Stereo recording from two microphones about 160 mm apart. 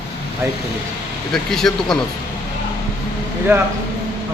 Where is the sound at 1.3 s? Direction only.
5° left (ahead or behind).